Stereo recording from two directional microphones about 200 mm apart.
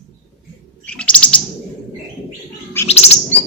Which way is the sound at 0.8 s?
5° left (ahead or behind).